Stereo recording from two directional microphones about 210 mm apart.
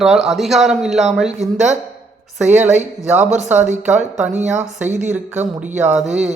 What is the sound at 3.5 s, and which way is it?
Speech, 10° right (ahead or behind).